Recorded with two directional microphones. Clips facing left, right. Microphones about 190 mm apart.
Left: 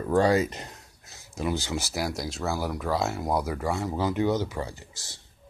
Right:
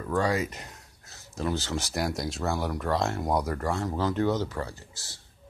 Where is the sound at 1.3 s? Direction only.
10° left (ahead or behind).